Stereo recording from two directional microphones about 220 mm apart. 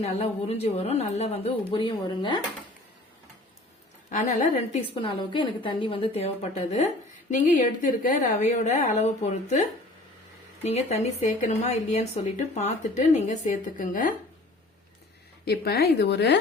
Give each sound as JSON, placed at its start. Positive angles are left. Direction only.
{"t": 0.0, "sound": "a woman's voice", "side_deg": 30}
{"t": 4.1, "sound": "speech", "side_deg": 35}
{"t": 4.9, "sound": "a woman's voice", "side_deg": 20}
{"t": 15.4, "sound": "speech", "side_deg": 45}